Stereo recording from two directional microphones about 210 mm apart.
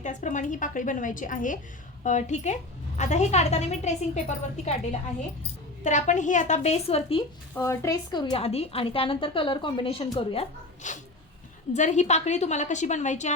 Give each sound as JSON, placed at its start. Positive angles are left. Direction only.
{"t": 0.0, "sound": "a woman's voice", "side_deg": 35}
{"t": 7.5, "sound": "a woman's voice", "side_deg": 15}